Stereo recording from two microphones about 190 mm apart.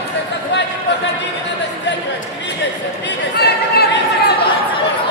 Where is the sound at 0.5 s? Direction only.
65° left (ahead or behind).